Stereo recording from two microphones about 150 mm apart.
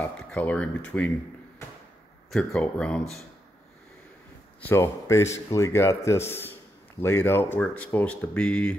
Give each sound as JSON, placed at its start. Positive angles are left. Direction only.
{"t": 0.2, "sound": "speech", "side_deg": 5}
{"t": 2.3, "sound": "speech", "side_deg": 5}
{"t": 4.6, "sound": "speech", "side_deg": 15}